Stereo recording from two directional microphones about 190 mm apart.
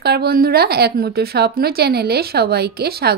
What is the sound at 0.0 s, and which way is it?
A woman's voice, 55° right (ahead or behind).